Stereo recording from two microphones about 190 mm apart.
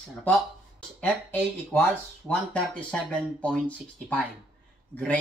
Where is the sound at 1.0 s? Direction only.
10° left (ahead or behind).